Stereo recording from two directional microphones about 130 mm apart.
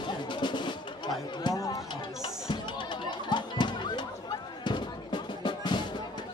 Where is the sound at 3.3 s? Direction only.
35° left (ahead or behind).